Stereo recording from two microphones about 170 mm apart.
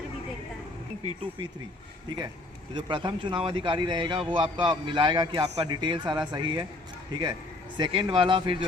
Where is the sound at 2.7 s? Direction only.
30° right (ahead or behind).